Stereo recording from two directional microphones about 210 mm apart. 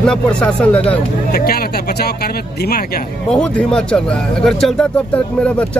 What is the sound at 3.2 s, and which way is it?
Speech, 5° left (ahead or behind).